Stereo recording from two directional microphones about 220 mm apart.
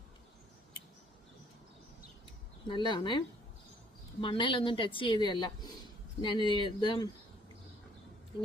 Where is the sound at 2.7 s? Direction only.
20° left (ahead or behind).